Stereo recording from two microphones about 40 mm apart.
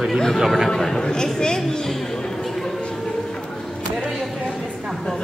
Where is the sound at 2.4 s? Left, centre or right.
Centre.